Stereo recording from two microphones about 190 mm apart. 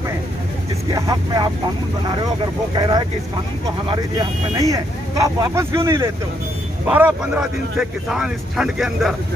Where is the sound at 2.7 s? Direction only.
20° right (ahead or behind); by 9.2 s centre (ahead or behind).